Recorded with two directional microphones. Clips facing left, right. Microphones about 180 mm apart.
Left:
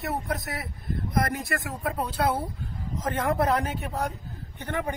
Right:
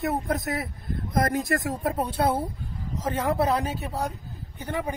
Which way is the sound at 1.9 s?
25° right (ahead or behind).